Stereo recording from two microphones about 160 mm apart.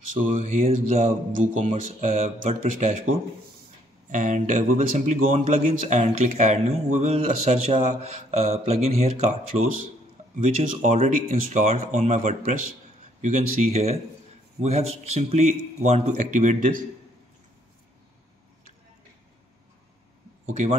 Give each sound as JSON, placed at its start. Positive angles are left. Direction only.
{"t": 0.2, "sound": "a man's voice", "side_deg": -55}
{"t": 20.4, "sound": "a man's voice", "side_deg": -50}